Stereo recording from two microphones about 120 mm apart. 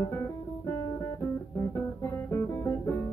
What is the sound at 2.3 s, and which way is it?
Music, 20° left (ahead or behind).